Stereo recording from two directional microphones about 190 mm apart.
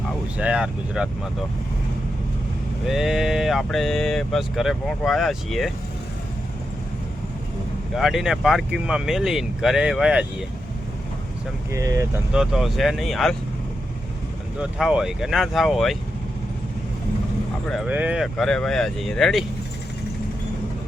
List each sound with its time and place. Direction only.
0.3 s speech: 5° right (ahead or behind)
2.8 s speech: centre (ahead or behind)
7.9 s speech: centre (ahead or behind)
11.7 s speech: 15° right (ahead or behind)
12.3 s speech: centre (ahead or behind)
14.6 s speech: 5° right (ahead or behind)
17.7 s speech: centre (ahead or behind)